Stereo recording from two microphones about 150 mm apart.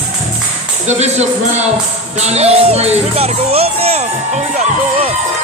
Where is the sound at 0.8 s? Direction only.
50° right (ahead or behind).